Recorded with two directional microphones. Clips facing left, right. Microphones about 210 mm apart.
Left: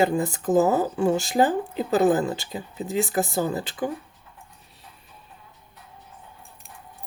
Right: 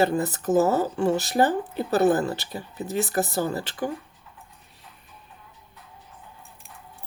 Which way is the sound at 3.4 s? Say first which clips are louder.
Left 1 dB; 20° left (ahead or behind).